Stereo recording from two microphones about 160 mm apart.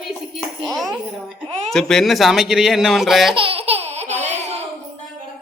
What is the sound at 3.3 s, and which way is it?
Laughter, 35° right (ahead or behind).